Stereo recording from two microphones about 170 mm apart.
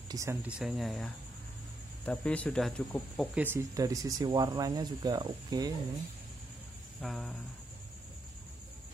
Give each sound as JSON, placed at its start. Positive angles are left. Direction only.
{"t": 0.1, "sound": "speech", "side_deg": -15}
{"t": 3.4, "sound": "speech", "side_deg": -20}
{"t": 7.0, "sound": "speech", "side_deg": 0}